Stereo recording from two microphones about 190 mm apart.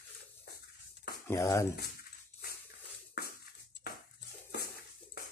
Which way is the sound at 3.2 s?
60° left (ahead or behind).